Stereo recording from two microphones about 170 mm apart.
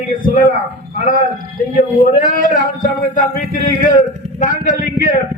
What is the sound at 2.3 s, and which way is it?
A man's voice, 50° left (ahead or behind).